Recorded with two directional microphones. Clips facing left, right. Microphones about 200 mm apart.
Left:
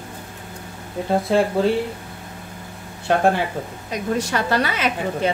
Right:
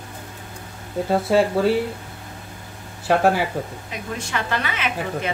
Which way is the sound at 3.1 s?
5° right (ahead or behind).